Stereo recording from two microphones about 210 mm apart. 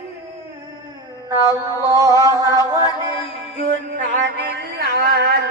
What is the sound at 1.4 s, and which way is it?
Mantra, 15° right (ahead or behind).